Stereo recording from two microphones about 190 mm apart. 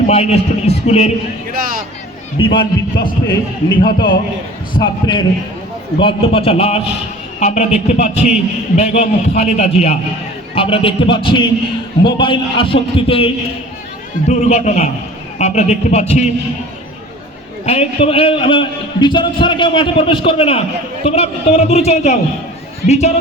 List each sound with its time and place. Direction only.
0.1 s a man's voice: 35° left (ahead or behind)
1.5 s speech: 50° right (ahead or behind)
2.4 s a man's voice: 25° left (ahead or behind)
17.7 s a man's voice: 30° left (ahead or behind)